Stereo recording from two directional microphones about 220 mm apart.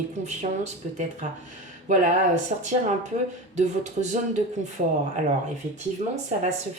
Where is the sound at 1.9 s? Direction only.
30° right (ahead or behind).